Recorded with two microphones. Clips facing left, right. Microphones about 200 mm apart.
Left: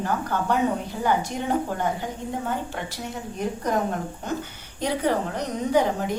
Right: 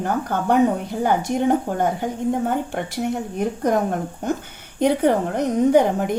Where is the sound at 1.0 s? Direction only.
50° right (ahead or behind).